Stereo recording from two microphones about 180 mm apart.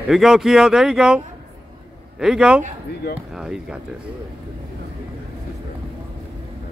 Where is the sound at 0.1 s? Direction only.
Centre (ahead or behind).